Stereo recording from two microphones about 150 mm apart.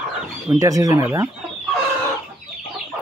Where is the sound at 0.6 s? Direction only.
20° right (ahead or behind).